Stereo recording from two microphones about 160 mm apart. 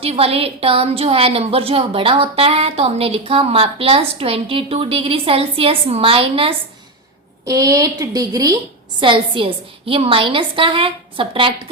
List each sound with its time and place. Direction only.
0.0 s a woman's voice: 40° right (ahead or behind)
7.4 s a woman's voice: 20° right (ahead or behind)